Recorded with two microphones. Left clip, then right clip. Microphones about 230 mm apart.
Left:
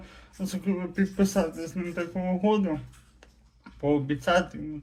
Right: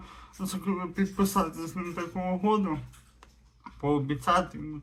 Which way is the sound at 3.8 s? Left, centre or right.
Centre.